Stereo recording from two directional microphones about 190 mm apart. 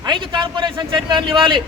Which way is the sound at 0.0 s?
25° right (ahead or behind).